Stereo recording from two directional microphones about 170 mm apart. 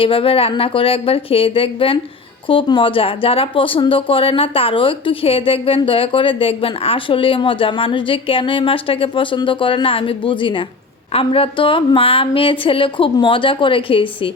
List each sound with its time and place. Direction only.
0.0 s speech: 30° left (ahead or behind)